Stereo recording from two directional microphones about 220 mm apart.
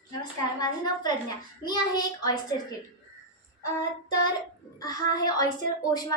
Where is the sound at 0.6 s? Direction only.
20° left (ahead or behind).